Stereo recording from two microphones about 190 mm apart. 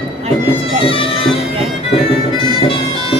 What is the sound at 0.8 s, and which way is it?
Bagpipes, 30° left (ahead or behind).